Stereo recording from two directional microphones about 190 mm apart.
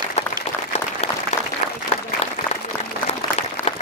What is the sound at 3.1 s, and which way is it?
Applause, 35° left (ahead or behind).